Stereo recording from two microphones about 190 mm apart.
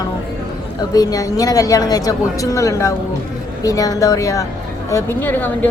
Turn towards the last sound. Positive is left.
turn(degrees=10)  # may be behind; listen again after turning